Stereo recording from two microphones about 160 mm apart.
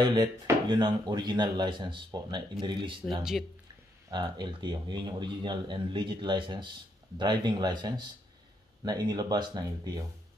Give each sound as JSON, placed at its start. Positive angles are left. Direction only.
{"t": 0.0, "sound": "speech", "side_deg": -25}
{"t": 3.2, "sound": "speech", "side_deg": -5}
{"t": 4.1, "sound": "speech", "side_deg": -30}